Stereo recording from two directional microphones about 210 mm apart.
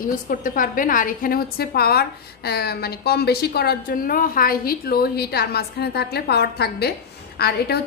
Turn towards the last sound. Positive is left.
turn(degrees=50)  # may be behind; listen again after turning